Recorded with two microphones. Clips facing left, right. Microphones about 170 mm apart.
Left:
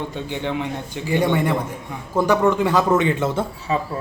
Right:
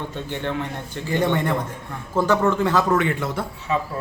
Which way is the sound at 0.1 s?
15° left (ahead or behind).